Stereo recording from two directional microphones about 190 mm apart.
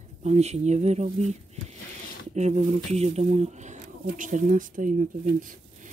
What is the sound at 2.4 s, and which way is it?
Speech, 35° right (ahead or behind).